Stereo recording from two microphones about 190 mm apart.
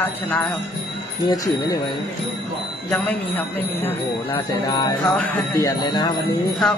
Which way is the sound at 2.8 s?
10° left (ahead or behind).